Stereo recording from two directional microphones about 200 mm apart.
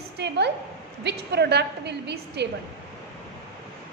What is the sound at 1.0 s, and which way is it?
A woman's voice, 55° right (ahead or behind).